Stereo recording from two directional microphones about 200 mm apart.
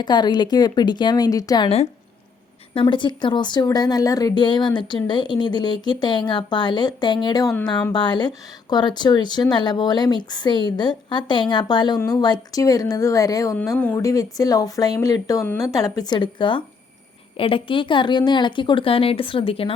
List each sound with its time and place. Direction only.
0.0 s speech: 20° left (ahead or behind)